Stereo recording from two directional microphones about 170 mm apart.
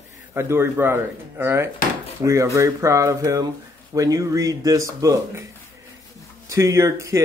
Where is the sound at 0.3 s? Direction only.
15° right (ahead or behind).